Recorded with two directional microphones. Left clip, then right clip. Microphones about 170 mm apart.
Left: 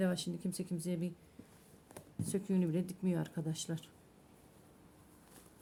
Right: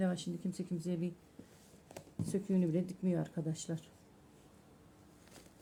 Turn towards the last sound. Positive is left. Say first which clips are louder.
# even
turn(degrees=20)  # may be behind; listen again after turning